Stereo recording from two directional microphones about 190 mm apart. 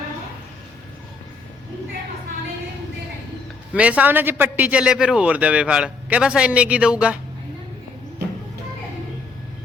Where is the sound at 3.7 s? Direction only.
5° right (ahead or behind).